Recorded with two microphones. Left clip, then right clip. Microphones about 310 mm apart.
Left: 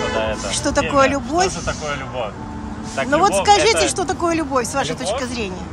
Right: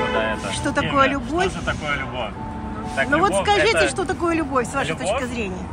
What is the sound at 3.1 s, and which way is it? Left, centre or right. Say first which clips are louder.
Speech: left 5 dB; centre.